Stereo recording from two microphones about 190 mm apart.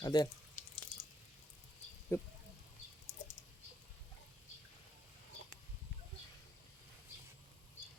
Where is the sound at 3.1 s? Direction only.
40° left (ahead or behind).